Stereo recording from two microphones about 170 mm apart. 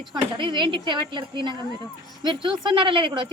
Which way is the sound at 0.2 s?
30° right (ahead or behind).